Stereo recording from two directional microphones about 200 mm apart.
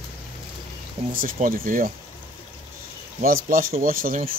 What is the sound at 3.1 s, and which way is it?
Speech, 45° right (ahead or behind).